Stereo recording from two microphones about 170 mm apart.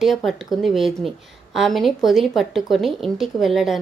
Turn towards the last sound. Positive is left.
turn(degrees=0)  # may be behind; listen again after turning